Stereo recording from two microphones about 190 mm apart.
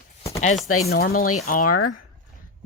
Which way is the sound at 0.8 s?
55° left (ahead or behind).